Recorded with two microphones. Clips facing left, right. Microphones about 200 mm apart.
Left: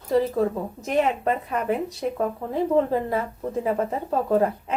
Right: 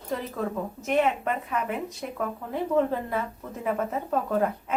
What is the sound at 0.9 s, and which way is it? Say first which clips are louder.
Speech: left 2 dB; 35° left (ahead or behind).